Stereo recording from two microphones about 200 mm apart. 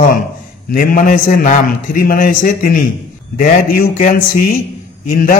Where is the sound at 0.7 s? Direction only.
45° left (ahead or behind).